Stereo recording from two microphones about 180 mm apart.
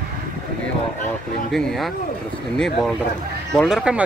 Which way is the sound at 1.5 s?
Centre (ahead or behind).